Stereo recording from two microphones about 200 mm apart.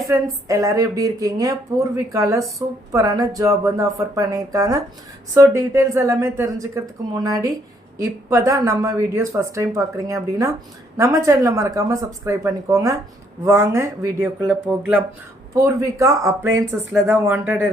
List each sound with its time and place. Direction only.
0.1 s speech: 15° right (ahead or behind)